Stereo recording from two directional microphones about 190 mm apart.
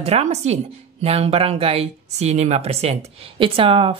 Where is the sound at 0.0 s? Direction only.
35° right (ahead or behind).